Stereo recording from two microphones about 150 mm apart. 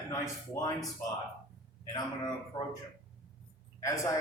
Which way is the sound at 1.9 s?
30° left (ahead or behind).